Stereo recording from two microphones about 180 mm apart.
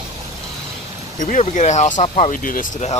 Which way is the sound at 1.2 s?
45° left (ahead or behind).